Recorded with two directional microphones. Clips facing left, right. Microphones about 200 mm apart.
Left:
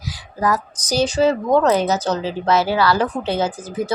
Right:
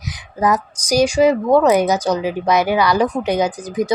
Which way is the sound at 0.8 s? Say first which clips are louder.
Right 4 dB; 10° right (ahead or behind).